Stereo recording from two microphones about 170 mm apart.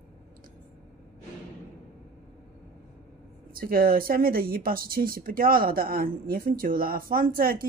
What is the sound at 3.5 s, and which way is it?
A woman's voice, 60° right (ahead or behind).